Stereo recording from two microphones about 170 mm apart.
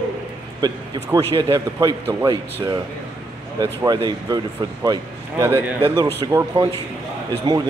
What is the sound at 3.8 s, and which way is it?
Speech, 20° right (ahead or behind).